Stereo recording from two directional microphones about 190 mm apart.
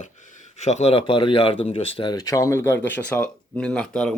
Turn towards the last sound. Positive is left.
turn(degrees=5)  # may be behind; listen again after turning